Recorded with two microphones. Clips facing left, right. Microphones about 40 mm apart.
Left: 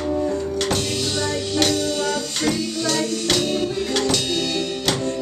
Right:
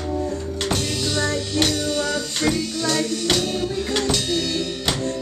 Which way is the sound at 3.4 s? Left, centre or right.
Left.